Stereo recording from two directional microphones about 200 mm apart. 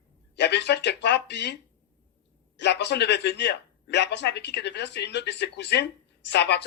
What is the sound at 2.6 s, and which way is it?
A man's voice, 60° left (ahead or behind).